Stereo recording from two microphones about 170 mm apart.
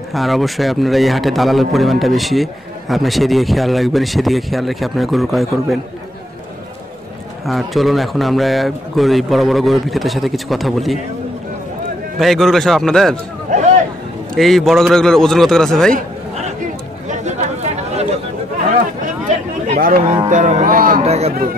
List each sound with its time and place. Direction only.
0.1 s a man's voice: centre (ahead or behind)
7.4 s a man's voice: centre (ahead or behind)
12.2 s a man's voice: centre (ahead or behind)
13.5 s a sound: 45° right (ahead or behind)
14.3 s a man's voice: centre (ahead or behind)
17.1 s chatter: 40° right (ahead or behind)
19.7 s speech: 60° right (ahead or behind)
20.2 s speech: 50° right (ahead or behind)
21.0 s speech: 40° right (ahead or behind)